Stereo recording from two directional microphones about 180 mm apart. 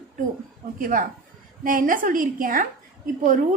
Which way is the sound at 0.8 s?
50° right (ahead or behind).